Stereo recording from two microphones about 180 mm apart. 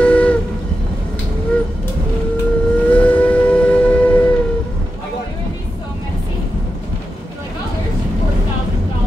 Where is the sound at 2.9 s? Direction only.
10° left (ahead or behind).